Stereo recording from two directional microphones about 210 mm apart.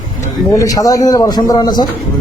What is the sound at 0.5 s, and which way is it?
A man's voice, 15° left (ahead or behind).